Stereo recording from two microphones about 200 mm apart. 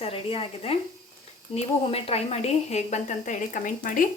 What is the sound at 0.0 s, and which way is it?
A woman's voice, 30° left (ahead or behind).